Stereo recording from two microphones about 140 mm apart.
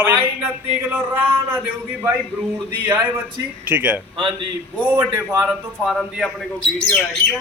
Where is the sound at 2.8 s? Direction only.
15° right (ahead or behind).